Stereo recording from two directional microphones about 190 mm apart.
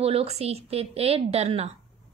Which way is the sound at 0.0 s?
30° right (ahead or behind).